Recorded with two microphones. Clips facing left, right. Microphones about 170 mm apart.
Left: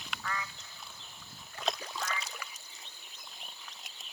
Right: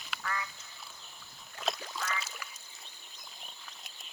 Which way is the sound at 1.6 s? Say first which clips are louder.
Even; centre (ahead or behind).